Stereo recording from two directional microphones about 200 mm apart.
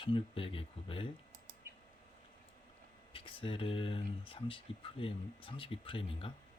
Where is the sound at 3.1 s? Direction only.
25° left (ahead or behind).